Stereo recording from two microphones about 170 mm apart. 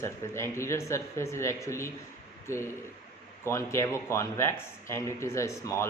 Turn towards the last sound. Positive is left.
turn(degrees=15)  # may be behind; listen again after turning